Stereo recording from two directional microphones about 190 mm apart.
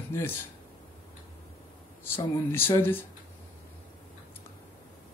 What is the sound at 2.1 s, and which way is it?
Speech, 10° left (ahead or behind).